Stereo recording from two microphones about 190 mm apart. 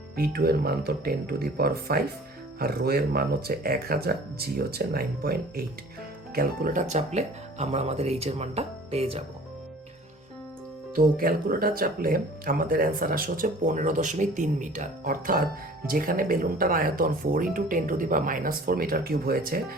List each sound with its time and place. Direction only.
0.2 s speech: 55° right (ahead or behind); by 9.2 s 30° right (ahead or behind)
10.9 s speech: 50° right (ahead or behind)